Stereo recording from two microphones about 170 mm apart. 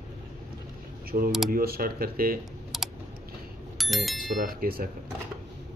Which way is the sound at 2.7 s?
Centre (ahead or behind).